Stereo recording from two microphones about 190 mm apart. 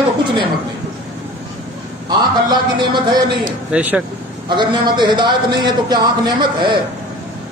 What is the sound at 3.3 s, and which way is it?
Speech, 5° right (ahead or behind).